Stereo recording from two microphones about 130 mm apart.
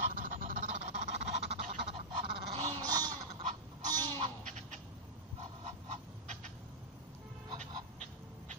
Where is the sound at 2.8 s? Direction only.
30° right (ahead or behind).